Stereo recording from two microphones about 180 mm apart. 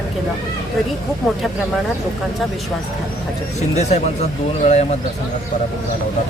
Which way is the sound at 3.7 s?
35° left (ahead or behind).